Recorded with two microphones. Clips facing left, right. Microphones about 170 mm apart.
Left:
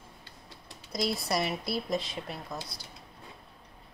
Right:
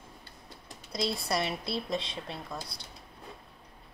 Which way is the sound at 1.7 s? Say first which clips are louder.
Left 2 dB; 30° right (ahead or behind).